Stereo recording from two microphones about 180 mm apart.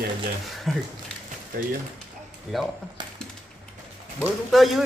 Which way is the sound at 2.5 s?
Centre (ahead or behind).